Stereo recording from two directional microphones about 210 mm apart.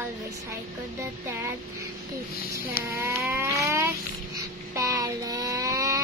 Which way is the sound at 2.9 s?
15° right (ahead or behind).